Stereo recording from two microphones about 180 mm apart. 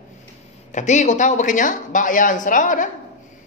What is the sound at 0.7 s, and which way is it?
A woman's voice, 40° left (ahead or behind).